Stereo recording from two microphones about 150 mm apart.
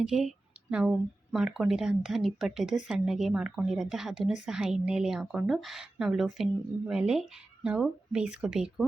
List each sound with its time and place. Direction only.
0.0 s speech: centre (ahead or behind)